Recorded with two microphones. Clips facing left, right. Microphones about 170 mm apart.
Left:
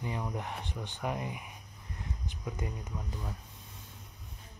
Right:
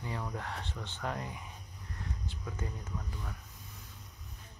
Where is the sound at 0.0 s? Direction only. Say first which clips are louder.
Left 2 dB; 15° left (ahead or behind).